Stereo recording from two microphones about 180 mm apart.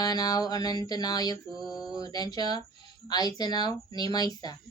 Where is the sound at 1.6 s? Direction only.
Centre (ahead or behind).